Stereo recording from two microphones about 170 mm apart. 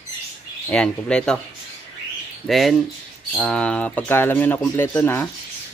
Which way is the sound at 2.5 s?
Centre (ahead or behind).